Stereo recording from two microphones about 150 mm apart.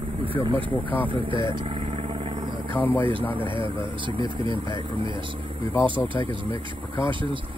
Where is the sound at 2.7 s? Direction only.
10° left (ahead or behind).